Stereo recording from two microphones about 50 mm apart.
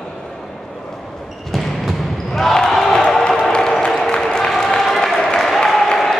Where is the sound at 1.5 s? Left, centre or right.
Centre.